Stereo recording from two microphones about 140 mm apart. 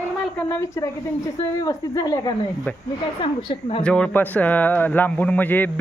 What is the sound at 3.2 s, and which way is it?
Speech, 35° left (ahead or behind).